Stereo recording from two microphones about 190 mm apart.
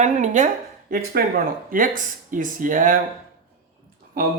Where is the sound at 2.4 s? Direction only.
45° right (ahead or behind).